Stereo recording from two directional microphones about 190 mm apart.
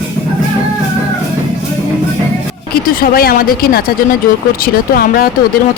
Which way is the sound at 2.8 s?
50° left (ahead or behind).